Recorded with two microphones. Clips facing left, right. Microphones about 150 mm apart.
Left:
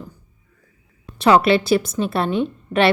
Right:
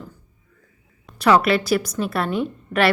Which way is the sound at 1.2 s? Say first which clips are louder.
Left 2 dB; 25° left (ahead or behind).